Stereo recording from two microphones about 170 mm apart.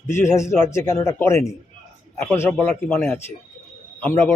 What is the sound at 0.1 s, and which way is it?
Speech, 15° left (ahead or behind).